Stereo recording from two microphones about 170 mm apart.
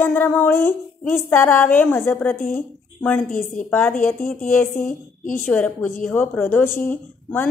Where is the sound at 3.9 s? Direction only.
50° left (ahead or behind).